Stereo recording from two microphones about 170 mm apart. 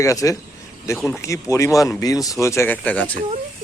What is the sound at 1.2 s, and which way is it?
Speech, 15° left (ahead or behind).